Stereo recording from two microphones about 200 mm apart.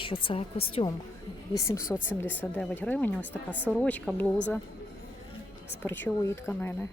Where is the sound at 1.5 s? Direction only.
15° left (ahead or behind).